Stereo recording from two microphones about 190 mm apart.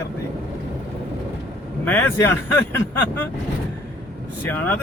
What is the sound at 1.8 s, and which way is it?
Speech, 10° left (ahead or behind).